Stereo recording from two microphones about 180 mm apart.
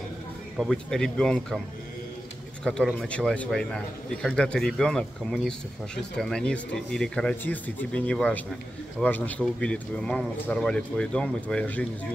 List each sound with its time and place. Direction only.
0.6 s speech: centre (ahead or behind)
2.6 s speech: 5° left (ahead or behind)